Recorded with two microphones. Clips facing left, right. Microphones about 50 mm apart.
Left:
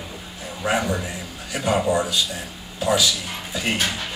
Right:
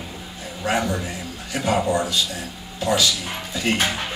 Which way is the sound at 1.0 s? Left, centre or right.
Centre.